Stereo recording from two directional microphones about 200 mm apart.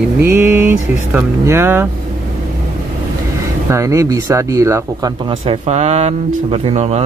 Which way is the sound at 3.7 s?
15° right (ahead or behind).